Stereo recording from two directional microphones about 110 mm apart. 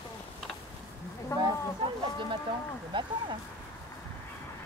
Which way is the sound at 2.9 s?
50° right (ahead or behind).